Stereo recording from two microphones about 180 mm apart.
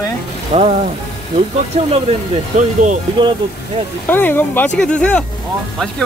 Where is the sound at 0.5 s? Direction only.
35° right (ahead or behind).